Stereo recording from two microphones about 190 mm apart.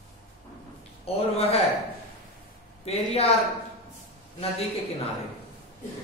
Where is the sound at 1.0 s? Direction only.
30° left (ahead or behind).